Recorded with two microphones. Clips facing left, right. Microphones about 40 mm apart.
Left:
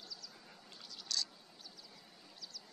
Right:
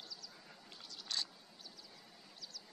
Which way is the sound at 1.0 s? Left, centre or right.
Right.